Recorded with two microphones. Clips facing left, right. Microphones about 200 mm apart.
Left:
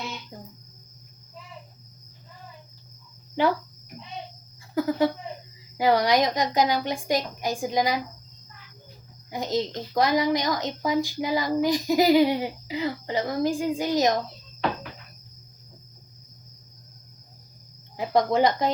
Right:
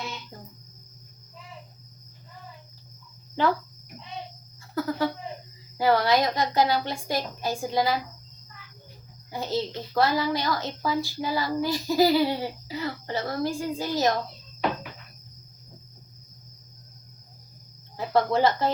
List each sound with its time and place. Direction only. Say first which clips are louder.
4.7 s a sound: left 4 dB; 15° left (ahead or behind)
5.7 s a child's voice: left 1 dB; 15° left (ahead or behind)
9.3 s a child's voice: left 2 dB; 15° left (ahead or behind)
17.9 s speech: left 1 dB; 15° left (ahead or behind)